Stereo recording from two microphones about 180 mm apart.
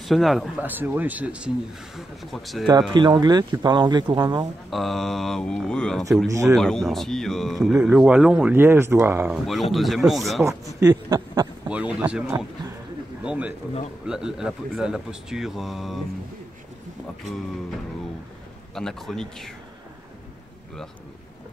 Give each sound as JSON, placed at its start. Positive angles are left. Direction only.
{"t": 0.0, "sound": "speech", "side_deg": 0}
{"t": 2.9, "sound": "speech", "side_deg": -25}
{"t": 4.6, "sound": "speech", "side_deg": 0}
{"t": 6.2, "sound": "speech", "side_deg": -15}
{"t": 6.5, "sound": "speech", "side_deg": 0}
{"t": 10.4, "sound": "speech", "side_deg": -20}
{"t": 11.7, "sound": "speech", "side_deg": -5}
{"t": 18.8, "sound": "speech", "side_deg": 0}